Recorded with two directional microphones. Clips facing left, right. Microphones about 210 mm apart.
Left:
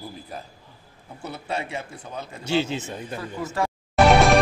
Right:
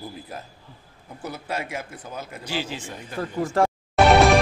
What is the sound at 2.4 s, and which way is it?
Speech, 25° left (ahead or behind).